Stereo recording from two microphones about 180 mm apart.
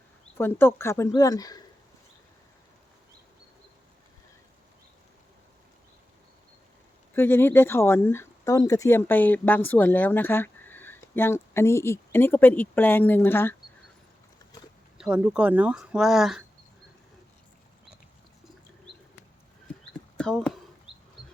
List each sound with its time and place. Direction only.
0.3 s speech: 10° left (ahead or behind)
7.2 s speech: 10° left (ahead or behind)
14.9 s speech: 5° right (ahead or behind)
20.1 s a sound: 5° left (ahead or behind)